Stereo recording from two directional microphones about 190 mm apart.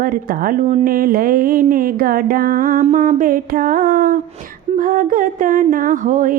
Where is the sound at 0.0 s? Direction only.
50° right (ahead or behind).